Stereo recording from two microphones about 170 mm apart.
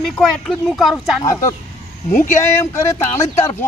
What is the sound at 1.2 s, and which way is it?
Speech, 20° left (ahead or behind).